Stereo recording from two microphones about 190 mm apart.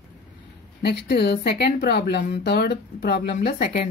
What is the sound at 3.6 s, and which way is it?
Speech, 35° left (ahead or behind).